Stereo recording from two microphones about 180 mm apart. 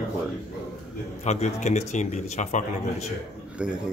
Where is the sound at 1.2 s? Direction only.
40° left (ahead or behind).